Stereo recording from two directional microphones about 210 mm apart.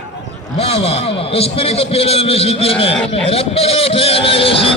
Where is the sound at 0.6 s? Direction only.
30° left (ahead or behind).